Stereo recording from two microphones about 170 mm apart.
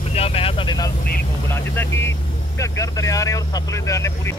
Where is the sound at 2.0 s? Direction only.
15° left (ahead or behind).